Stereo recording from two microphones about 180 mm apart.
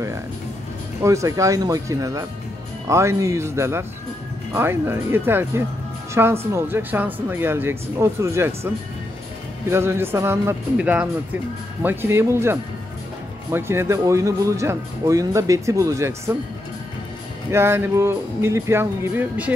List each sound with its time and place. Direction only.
1.0 s speech: 15° right (ahead or behind)
9.7 s speech: 15° right (ahead or behind)
17.5 s speech: 15° right (ahead or behind)